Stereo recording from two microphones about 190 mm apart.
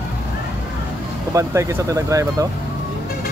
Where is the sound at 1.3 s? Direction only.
15° right (ahead or behind).